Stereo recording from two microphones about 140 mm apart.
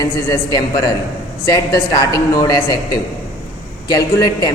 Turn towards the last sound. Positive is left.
turn(degrees=25)  # may be behind; listen again after turning